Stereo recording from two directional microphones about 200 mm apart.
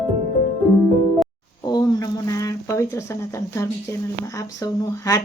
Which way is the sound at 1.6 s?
20° left (ahead or behind).